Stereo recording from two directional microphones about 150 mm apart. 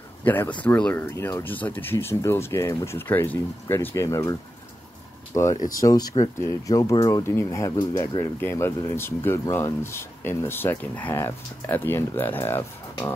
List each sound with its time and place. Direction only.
0.2 s speech: 10° left (ahead or behind)